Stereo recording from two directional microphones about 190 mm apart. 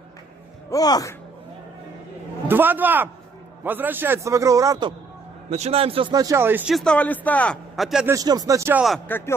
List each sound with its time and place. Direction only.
0.7 s speech: 20° left (ahead or behind)
2.4 s a man's voice: 10° right (ahead or behind)
5.5 s speech: 30° right (ahead or behind); by 6.6 s 10° right (ahead or behind)
6.7 s a man's voice: 5° left (ahead or behind)
8.1 s a man's voice: 20° right (ahead or behind)
8.8 s speech: 5° left (ahead or behind)